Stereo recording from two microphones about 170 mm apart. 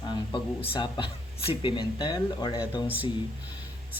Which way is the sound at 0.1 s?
30° left (ahead or behind).